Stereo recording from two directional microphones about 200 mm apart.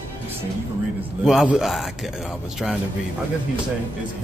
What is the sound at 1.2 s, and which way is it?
Speech, centre (ahead or behind).